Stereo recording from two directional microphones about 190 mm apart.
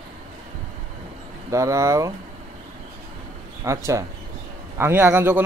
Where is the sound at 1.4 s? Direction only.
15° right (ahead or behind).